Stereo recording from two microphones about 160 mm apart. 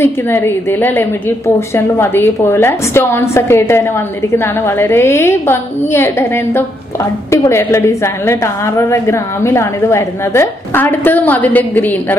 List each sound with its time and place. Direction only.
0.0 s a woman's voice: 15° left (ahead or behind)